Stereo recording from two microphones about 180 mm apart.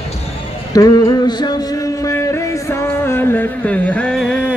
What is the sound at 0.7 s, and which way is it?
Male singing, 20° left (ahead or behind).